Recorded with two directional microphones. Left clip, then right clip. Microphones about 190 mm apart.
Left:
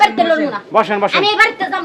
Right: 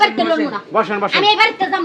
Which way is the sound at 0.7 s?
15° left (ahead or behind).